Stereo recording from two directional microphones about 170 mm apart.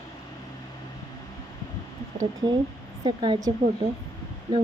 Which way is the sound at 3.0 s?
25° right (ahead or behind).